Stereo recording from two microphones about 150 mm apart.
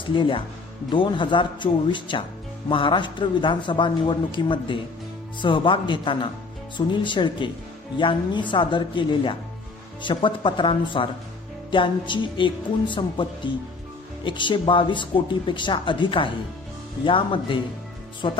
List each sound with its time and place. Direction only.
0.0 s a man's voice: 35° left (ahead or behind)